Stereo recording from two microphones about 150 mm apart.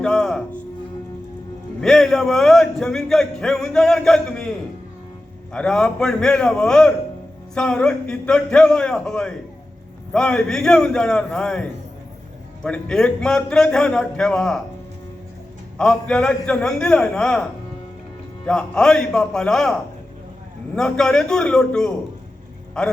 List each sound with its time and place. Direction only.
0.0 s music: 5° left (ahead or behind)
1.8 s speech: 5° left (ahead or behind)
5.5 s speech: 5° left (ahead or behind)
15.8 s speech: 5° left (ahead or behind)
18.4 s speech: 5° left (ahead or behind)